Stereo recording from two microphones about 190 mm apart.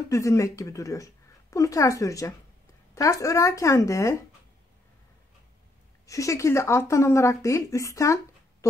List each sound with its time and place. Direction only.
0.1 s speech: 15° left (ahead or behind)
6.0 s speech: 15° left (ahead or behind)